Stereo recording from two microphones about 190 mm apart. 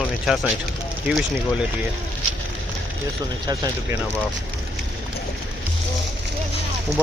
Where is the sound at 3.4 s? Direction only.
20° right (ahead or behind).